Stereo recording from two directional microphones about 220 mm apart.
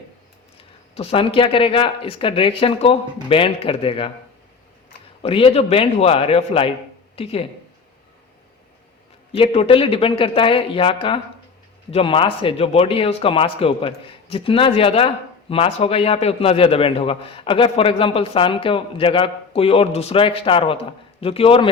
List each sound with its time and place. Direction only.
0.9 s speech: 25° left (ahead or behind)
5.2 s speech: 25° left (ahead or behind)
9.3 s speech: 25° left (ahead or behind)